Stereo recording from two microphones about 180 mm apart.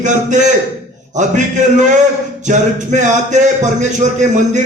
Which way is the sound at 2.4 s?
40° right (ahead or behind).